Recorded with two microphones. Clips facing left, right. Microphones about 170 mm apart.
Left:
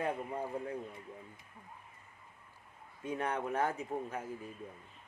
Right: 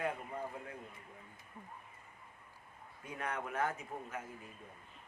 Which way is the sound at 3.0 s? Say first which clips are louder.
Left 6 dB; 30° left (ahead or behind).